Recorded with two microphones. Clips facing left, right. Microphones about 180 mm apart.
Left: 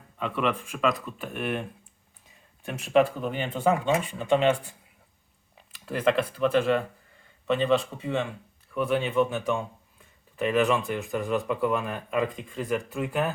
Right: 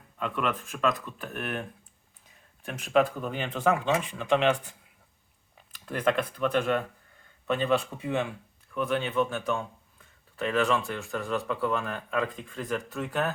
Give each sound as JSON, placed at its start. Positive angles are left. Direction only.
{"t": 0.2, "sound": "speech", "side_deg": 0}
{"t": 2.6, "sound": "speech", "side_deg": 0}
{"t": 5.7, "sound": "speech", "side_deg": 5}
{"t": 8.7, "sound": "speech", "side_deg": 5}